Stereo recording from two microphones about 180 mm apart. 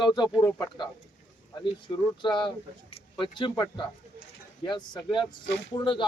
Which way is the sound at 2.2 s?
25° left (ahead or behind).